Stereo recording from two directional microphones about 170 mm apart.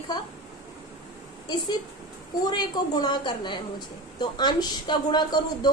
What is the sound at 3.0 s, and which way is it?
A woman's voice, 25° left (ahead or behind).